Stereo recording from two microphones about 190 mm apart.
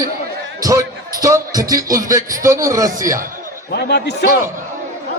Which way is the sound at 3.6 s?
60° left (ahead or behind).